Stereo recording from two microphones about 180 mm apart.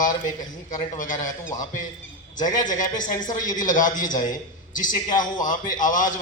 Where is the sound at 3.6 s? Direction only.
45° left (ahead or behind).